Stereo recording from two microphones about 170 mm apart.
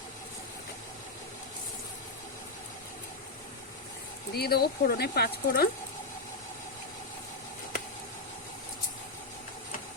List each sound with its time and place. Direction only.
4.4 s speech: 65° left (ahead or behind)